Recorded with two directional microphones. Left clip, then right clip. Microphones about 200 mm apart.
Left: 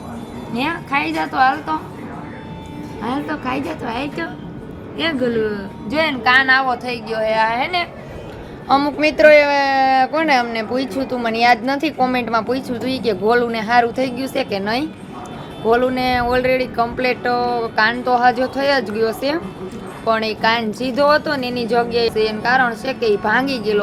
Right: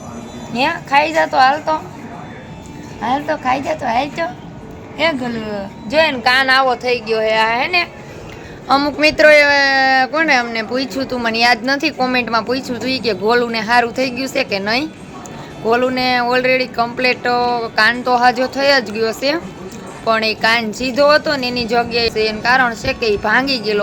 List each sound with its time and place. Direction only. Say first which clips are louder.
0.5 s speech: right 6 dB; 30° right (ahead or behind)
3.0 s a woman's voice: right 6 dB; 30° right (ahead or behind); by 23.8 s 10° right (ahead or behind)